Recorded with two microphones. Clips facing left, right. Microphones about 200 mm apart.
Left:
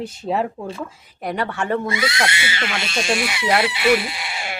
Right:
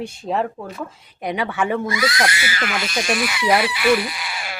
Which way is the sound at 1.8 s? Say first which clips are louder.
Right 1 dB; 25° left (ahead or behind).